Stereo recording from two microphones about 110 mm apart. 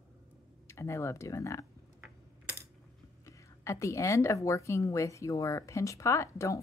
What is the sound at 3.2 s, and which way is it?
Speech, 30° left (ahead or behind).